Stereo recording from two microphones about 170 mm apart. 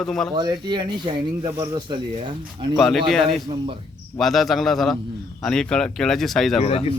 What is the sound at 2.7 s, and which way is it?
Speech, centre (ahead or behind).